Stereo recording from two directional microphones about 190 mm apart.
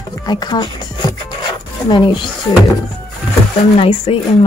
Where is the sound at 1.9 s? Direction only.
25° left (ahead or behind).